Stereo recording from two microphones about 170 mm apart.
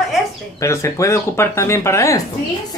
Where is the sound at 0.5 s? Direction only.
20° left (ahead or behind).